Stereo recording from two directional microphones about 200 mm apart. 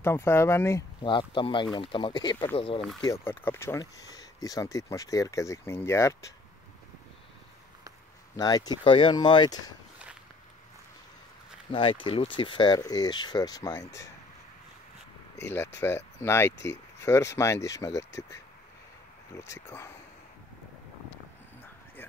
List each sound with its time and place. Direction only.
0.0 s speech: 10° left (ahead or behind); by 2.8 s 30° left (ahead or behind)
3.0 s speech: 15° left (ahead or behind)
8.4 s speech: 20° left (ahead or behind)
11.7 s speech: 25° left (ahead or behind)
15.4 s speech: 10° left (ahead or behind)
16.5 s speech: 60° left (ahead or behind)
17.0 s speech: 15° left (ahead or behind)